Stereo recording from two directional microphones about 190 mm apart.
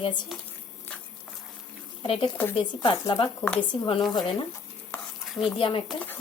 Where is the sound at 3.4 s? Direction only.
5° left (ahead or behind).